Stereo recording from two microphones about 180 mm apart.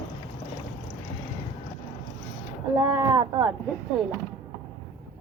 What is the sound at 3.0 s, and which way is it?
Speech, 20° right (ahead or behind).